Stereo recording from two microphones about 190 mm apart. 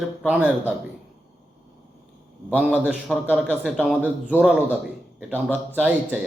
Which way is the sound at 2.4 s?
5° left (ahead or behind).